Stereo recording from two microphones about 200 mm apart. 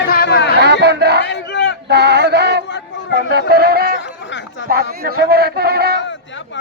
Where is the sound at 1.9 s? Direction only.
55° right (ahead or behind).